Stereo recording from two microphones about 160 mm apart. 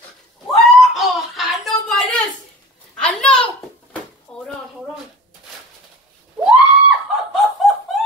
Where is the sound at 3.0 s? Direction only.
5° left (ahead or behind).